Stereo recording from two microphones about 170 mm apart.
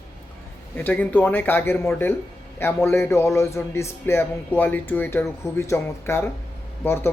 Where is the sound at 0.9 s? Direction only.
10° left (ahead or behind).